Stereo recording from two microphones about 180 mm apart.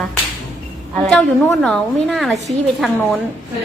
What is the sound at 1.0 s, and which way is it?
A woman's voice, centre (ahead or behind).